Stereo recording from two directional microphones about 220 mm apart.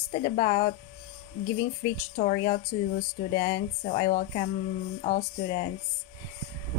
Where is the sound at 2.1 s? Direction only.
35° left (ahead or behind).